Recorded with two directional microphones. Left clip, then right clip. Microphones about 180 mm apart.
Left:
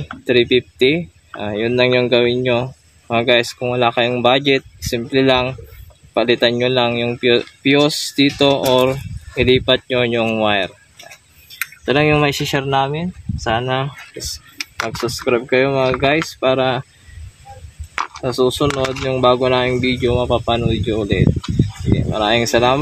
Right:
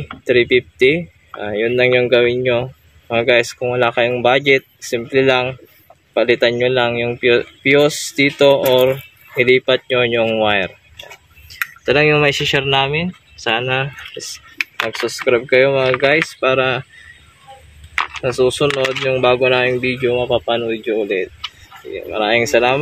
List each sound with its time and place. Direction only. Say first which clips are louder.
0.2 s speech: right 1 dB; 55° left (ahead or behind)
11.8 s speech: right 2 dB; 45° left (ahead or behind)
17.9 s a sound: right 3 dB; 20° left (ahead or behind)
18.7 s speech: right 2 dB; 15° left (ahead or behind)
19.4 s speech: right 1 dB; 50° left (ahead or behind)
22.2 s speech: right 1 dB; 50° left (ahead or behind)